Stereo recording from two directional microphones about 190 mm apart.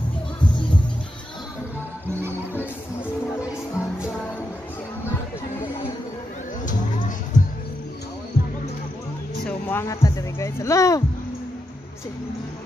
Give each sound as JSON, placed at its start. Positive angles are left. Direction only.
{"t": 3.3, "sound": "music", "side_deg": 15}
{"t": 6.6, "sound": "music", "side_deg": 40}
{"t": 9.4, "sound": "speech", "side_deg": 10}